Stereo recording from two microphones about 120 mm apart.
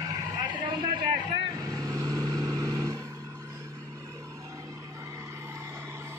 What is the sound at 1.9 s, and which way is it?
Vehicle, 30° right (ahead or behind).